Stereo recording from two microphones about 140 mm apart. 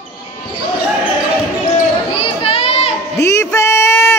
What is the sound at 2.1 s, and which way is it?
Children playing, 45° left (ahead or behind).